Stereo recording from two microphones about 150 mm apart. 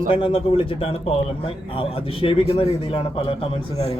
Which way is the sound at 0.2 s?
35° left (ahead or behind).